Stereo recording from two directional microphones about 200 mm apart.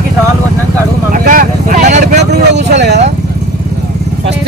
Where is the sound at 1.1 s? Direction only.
45° right (ahead or behind).